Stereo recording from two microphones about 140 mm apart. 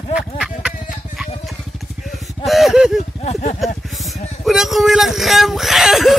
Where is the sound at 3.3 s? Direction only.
50° left (ahead or behind).